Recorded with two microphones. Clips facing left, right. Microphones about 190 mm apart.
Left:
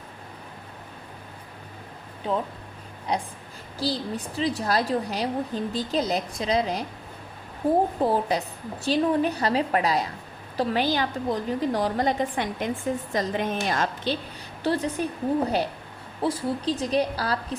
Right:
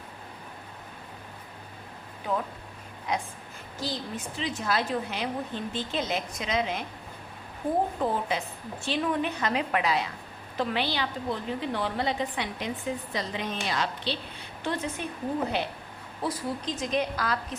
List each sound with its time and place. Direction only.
3.1 s a woman's voice: 35° left (ahead or behind)
14.6 s a woman's voice: 35° left (ahead or behind)
16.2 s a woman's voice: 30° left (ahead or behind)